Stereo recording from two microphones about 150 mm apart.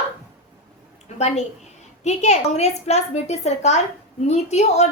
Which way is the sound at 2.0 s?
50° left (ahead or behind).